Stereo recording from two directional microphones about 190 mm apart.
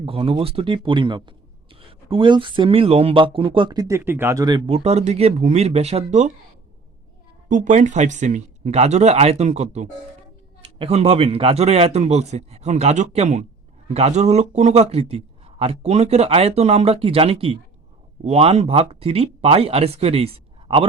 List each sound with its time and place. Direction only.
0.0 s speech: 30° right (ahead or behind)
7.4 s a man's voice: 40° right (ahead or behind)